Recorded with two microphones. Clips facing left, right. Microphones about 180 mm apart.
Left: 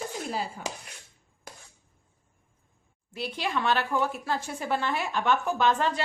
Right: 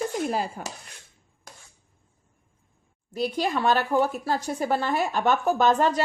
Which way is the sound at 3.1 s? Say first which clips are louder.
Right 5 dB; 40° right (ahead or behind).